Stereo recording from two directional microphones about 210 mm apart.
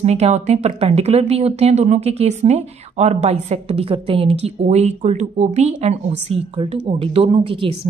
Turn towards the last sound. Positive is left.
turn(degrees=-25)  # may be behind; listen again after turning